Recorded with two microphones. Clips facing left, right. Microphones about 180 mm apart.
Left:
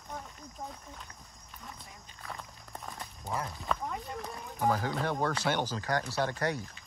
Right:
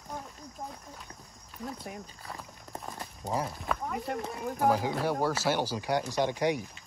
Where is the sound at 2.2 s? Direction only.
Centre (ahead or behind).